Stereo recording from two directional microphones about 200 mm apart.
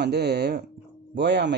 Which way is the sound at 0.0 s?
55° right (ahead or behind).